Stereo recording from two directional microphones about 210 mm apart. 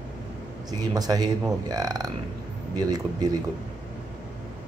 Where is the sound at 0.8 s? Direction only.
20° right (ahead or behind).